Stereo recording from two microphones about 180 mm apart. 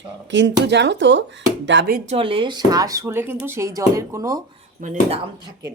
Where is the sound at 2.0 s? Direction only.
30° right (ahead or behind).